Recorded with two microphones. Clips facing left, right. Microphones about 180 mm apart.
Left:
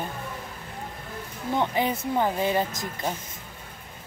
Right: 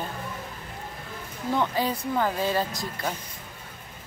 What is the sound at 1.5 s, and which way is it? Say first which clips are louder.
Speech: left 1 dB; 20° left (ahead or behind).